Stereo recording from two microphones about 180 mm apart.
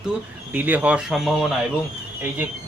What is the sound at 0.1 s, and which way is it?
Speech, 10° right (ahead or behind).